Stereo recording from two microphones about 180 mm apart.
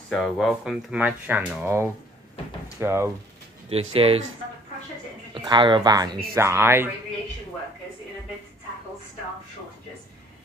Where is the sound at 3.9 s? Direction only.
30° right (ahead or behind).